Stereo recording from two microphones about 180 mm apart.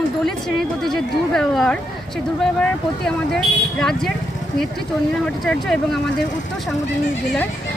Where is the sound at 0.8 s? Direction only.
5° left (ahead or behind).